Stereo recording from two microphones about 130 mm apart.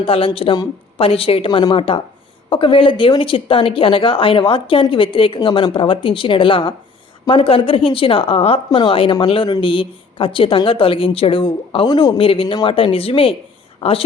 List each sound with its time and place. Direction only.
0.0 s a woman's voice: 45° left (ahead or behind)